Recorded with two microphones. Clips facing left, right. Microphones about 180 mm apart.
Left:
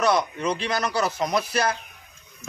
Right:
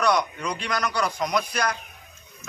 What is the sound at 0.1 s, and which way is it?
A man's voice, 25° left (ahead or behind).